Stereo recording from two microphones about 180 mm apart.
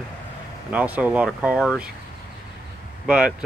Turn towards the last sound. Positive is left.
turn(degrees=-5)  # may be behind; listen again after turning